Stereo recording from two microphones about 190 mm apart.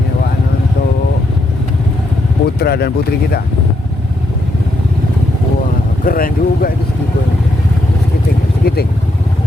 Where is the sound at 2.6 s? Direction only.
55° left (ahead or behind).